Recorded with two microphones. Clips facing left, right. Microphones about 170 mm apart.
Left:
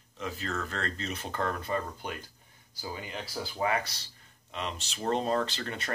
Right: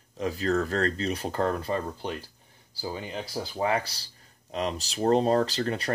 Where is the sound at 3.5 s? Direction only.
30° right (ahead or behind).